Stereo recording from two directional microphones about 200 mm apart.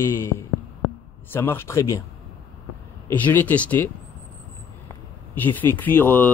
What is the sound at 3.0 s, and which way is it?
Speech, 10° left (ahead or behind).